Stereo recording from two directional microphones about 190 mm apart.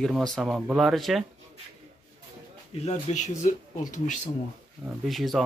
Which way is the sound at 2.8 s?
35° left (ahead or behind).